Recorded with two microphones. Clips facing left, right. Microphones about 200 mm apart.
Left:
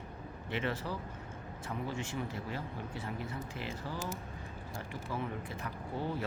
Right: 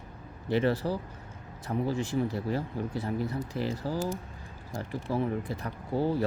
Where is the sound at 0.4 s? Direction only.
35° right (ahead or behind).